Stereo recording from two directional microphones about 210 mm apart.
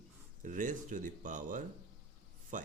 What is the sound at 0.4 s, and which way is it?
A man's voice, 40° right (ahead or behind).